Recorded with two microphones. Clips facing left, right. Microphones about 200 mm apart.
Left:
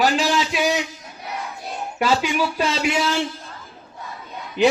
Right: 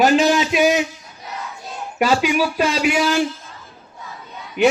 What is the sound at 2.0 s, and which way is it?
Speech, 15° right (ahead or behind).